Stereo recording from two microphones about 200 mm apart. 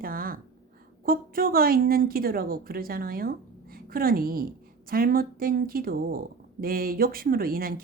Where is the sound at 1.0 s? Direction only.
45° right (ahead or behind).